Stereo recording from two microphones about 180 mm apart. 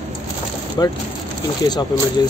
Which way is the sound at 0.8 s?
20° left (ahead or behind).